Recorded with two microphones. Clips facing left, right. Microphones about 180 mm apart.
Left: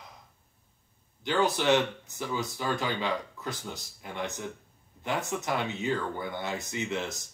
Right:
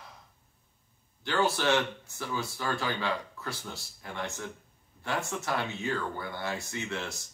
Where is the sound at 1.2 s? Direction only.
15° left (ahead or behind).